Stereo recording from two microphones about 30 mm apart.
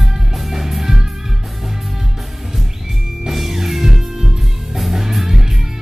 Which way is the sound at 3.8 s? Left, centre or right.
Centre.